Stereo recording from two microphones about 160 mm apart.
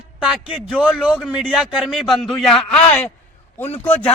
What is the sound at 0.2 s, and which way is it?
A man's voice, 5° right (ahead or behind).